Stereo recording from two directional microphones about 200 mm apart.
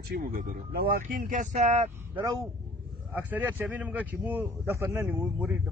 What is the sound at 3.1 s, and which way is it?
Speech, 10° right (ahead or behind).